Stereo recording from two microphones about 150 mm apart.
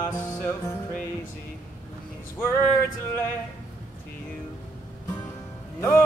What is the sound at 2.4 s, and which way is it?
Music, 10° left (ahead or behind).